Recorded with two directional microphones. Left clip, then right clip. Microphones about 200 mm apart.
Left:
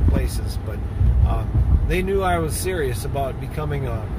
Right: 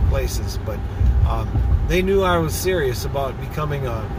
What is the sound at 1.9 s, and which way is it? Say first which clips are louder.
Speech: right 3 dB; 15° right (ahead or behind).